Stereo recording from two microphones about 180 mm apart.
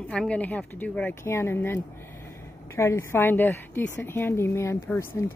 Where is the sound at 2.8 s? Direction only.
15° left (ahead or behind).